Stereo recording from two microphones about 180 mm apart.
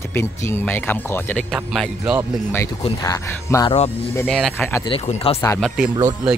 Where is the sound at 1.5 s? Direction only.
Centre (ahead or behind).